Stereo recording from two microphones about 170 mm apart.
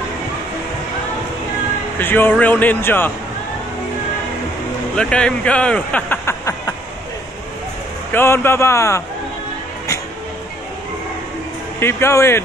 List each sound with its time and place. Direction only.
2.0 s speech: 10° left (ahead or behind)
4.9 s speech: 5° left (ahead or behind)
8.1 s speech: 15° left (ahead or behind)
11.8 s speech: 15° left (ahead or behind)